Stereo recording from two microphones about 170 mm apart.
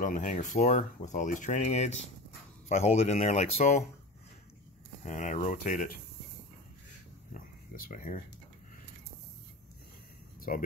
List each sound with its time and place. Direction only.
0.0 s speech: 50° left (ahead or behind)
5.0 s speech: 45° left (ahead or behind)
7.7 s speech: 60° left (ahead or behind)
10.5 s speech: 55° left (ahead or behind)